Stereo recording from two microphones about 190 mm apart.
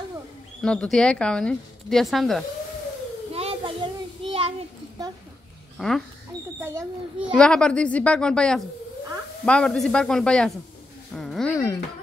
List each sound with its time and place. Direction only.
0.6 s speech: 5° left (ahead or behind)
3.3 s a sound: 30° right (ahead or behind)
5.8 s speech: centre (ahead or behind)
6.6 s a child's voice: 15° right (ahead or behind)
7.3 s speech: 5° left (ahead or behind)
11.5 s speech: 15° left (ahead or behind)